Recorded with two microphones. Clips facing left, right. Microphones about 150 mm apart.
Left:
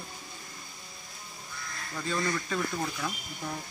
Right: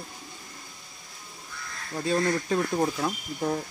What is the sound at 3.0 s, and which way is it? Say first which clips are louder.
Speech: right 8 dB; 60° right (ahead or behind).